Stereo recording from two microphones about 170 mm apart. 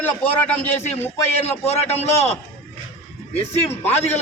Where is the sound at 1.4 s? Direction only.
40° left (ahead or behind).